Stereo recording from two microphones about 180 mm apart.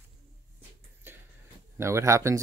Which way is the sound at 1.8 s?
15° right (ahead or behind).